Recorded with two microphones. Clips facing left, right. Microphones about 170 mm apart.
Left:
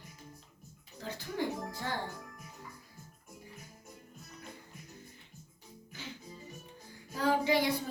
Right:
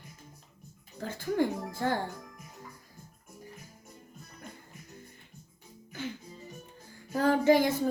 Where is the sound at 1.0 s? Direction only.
50° right (ahead or behind).